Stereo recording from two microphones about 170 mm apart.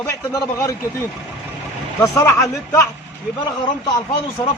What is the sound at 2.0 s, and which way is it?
Speech, 20° left (ahead or behind).